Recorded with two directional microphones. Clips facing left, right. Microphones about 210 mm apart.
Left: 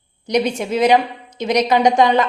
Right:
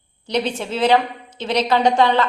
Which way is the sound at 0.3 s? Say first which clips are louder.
Left 4 dB; 15° left (ahead or behind).